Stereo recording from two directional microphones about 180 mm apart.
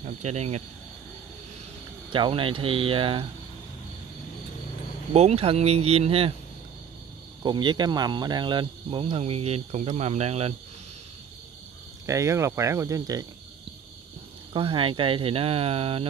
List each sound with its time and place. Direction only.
0.0 s speech: 40° right (ahead or behind)
2.0 s speech: 30° right (ahead or behind)
5.1 s speech: 35° right (ahead or behind)
7.4 s speech: 25° right (ahead or behind)
12.1 s speech: 15° right (ahead or behind)
14.5 s speech: 30° right (ahead or behind)